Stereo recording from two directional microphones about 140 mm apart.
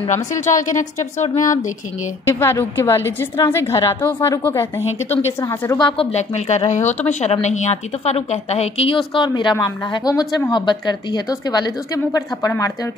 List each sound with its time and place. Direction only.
0.1 s a woman's voice: 60° left (ahead or behind)
2.2 s a woman's voice: 20° left (ahead or behind)
5.8 s a woman's voice: 35° left (ahead or behind)
6.1 s a woman's voice: 55° left (ahead or behind); by 12.7 s 25° left (ahead or behind)